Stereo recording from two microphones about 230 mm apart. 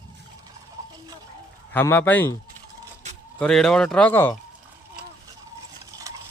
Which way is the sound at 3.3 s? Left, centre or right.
Centre.